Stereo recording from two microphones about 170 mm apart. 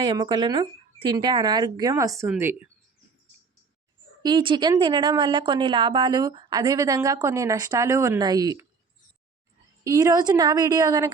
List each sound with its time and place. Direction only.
0.0 s a woman's voice: 25° right (ahead or behind)
2.2 s a woman's voice: 10° right (ahead or behind)
4.2 s a woman's voice: 25° right (ahead or behind)
9.8 s a woman's voice: 20° right (ahead or behind)